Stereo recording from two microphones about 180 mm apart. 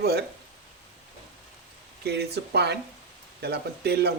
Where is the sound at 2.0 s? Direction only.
65° right (ahead or behind).